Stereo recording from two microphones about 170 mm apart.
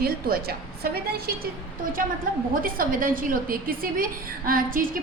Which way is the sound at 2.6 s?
55° right (ahead or behind).